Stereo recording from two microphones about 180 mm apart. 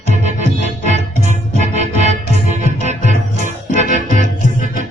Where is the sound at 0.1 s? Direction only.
40° right (ahead or behind).